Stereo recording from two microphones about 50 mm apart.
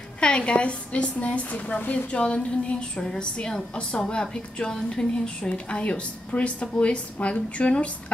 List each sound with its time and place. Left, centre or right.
0.2 s speech: left